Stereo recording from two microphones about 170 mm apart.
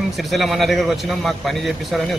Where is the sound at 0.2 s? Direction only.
Centre (ahead or behind).